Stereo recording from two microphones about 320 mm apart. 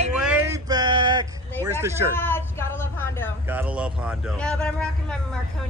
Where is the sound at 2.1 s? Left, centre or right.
Centre.